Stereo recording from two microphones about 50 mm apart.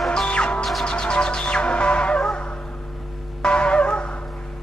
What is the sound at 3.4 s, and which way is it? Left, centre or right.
Music, centre.